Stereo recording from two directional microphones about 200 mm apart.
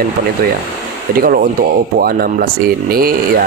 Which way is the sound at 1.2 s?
45° right (ahead or behind).